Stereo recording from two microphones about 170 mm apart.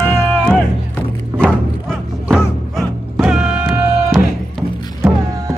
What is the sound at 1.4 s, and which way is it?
Music, centre (ahead or behind).